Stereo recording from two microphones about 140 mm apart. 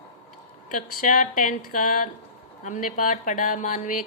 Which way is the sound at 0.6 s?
75° left (ahead or behind).